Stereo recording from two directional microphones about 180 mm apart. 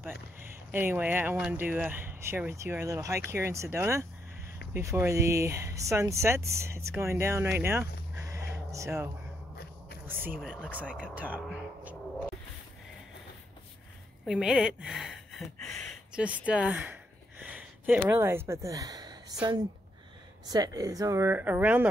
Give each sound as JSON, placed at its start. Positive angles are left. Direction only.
{"t": 0.7, "sound": "speech", "side_deg": -10}
{"t": 14.2, "sound": "speech", "side_deg": -5}
{"t": 14.8, "sound": "gasp", "side_deg": -5}
{"t": 15.9, "sound": "speech", "side_deg": -5}
{"t": 20.4, "sound": "speech", "side_deg": -20}